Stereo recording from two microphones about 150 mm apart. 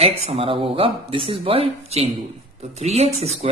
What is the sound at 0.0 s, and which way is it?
A woman's voice, 40° right (ahead or behind).